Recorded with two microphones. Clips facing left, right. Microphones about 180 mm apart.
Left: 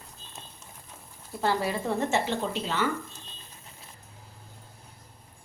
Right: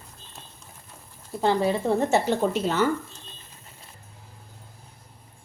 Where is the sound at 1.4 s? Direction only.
25° right (ahead or behind).